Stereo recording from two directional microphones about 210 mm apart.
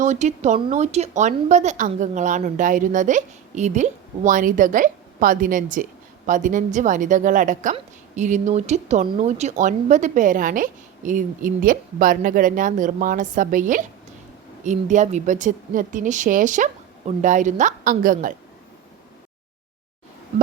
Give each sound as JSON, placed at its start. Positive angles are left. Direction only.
{"t": 0.0, "sound": "a woman's voice", "side_deg": -35}